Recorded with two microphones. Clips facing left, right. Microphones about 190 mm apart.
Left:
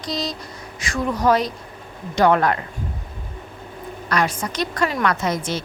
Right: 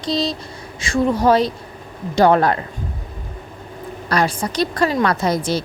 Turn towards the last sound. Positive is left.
turn(degrees=-35)  # may be behind; listen again after turning